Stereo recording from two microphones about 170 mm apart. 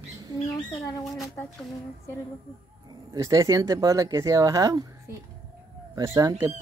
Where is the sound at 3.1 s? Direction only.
20° right (ahead or behind).